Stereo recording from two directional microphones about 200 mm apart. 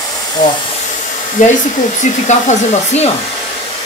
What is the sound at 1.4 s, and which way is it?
Speech, 40° left (ahead or behind).